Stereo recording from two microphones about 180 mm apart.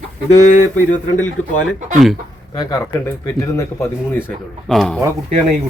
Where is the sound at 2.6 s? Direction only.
15° left (ahead or behind).